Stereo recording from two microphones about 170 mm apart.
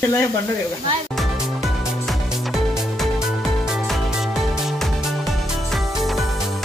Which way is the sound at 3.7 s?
Centre (ahead or behind).